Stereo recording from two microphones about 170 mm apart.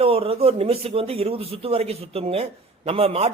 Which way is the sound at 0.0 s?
35° right (ahead or behind).